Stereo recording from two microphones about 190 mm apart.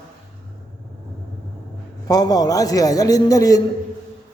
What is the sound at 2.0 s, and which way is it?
A man's voice, 20° left (ahead or behind).